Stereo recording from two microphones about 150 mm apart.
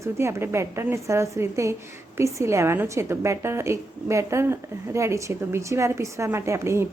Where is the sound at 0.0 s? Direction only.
15° right (ahead or behind).